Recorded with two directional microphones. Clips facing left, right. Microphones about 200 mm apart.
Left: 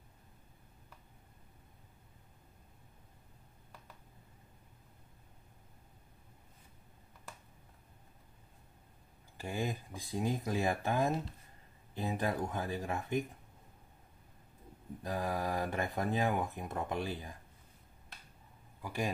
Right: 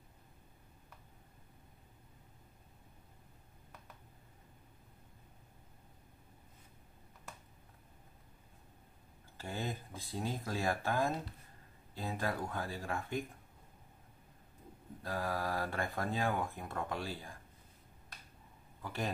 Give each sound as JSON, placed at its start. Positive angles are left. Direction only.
{"t": 9.4, "sound": "speech", "side_deg": 15}
{"t": 15.0, "sound": "speech", "side_deg": 20}
{"t": 18.8, "sound": "a man's voice", "side_deg": 15}